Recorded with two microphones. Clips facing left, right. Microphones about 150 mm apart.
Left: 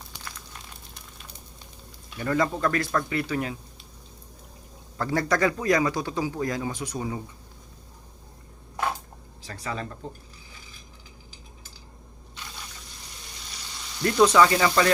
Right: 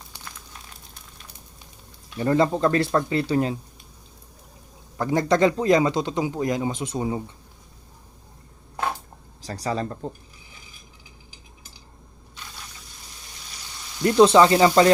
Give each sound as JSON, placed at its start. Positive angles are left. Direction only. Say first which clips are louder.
{"t": 0.3, "sound": "crumpling", "louder": "right 1 dB", "side_deg": -5}
{"t": 2.1, "sound": "a man's voice", "louder": "right 5 dB", "side_deg": -30}
{"t": 4.9, "sound": "a man's voice", "louder": "right 5 dB", "side_deg": -20}
{"t": 9.4, "sound": "speech", "louder": "right 6 dB", "side_deg": -35}
{"t": 13.7, "sound": "a sound", "louder": "right 4 dB", "side_deg": -15}
{"t": 14.2, "sound": "a man's voice", "louder": "right 4 dB", "side_deg": -30}